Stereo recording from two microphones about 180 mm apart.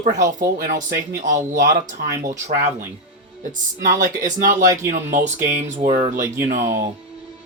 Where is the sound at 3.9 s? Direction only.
45° right (ahead or behind).